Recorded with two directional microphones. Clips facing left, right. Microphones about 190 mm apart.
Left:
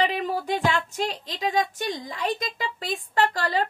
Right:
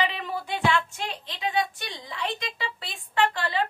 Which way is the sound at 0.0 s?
40° left (ahead or behind).